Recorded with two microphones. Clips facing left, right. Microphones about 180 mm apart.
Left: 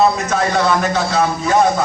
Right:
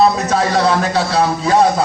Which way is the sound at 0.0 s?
35° right (ahead or behind).